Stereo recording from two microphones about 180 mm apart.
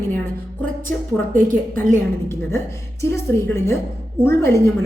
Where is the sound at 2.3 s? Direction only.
15° left (ahead or behind).